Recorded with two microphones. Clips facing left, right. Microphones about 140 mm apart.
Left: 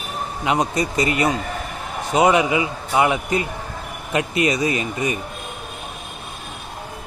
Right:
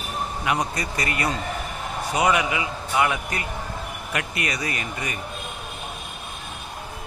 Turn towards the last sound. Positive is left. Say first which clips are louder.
# left 8 dB
turn(degrees=20)  # may be behind; listen again after turning